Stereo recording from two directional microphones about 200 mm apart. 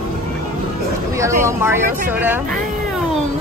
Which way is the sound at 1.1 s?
15° right (ahead or behind).